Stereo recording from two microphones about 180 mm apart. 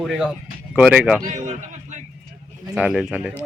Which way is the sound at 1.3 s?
40° right (ahead or behind).